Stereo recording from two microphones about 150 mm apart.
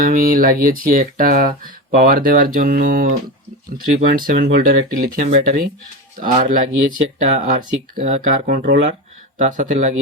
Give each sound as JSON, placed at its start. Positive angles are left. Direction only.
{"t": 0.0, "sound": "speech", "side_deg": -65}
{"t": 5.2, "sound": "speech", "side_deg": -50}
{"t": 6.1, "sound": "speech", "side_deg": -65}